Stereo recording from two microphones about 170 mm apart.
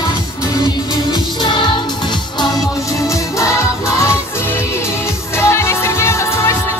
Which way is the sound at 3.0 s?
20° left (ahead or behind).